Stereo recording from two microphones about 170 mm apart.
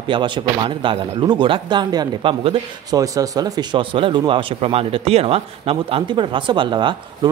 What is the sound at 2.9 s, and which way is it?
Speech, 20° right (ahead or behind).